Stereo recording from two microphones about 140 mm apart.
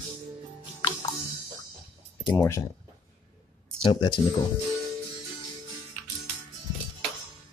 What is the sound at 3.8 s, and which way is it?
Speech, 35° left (ahead or behind).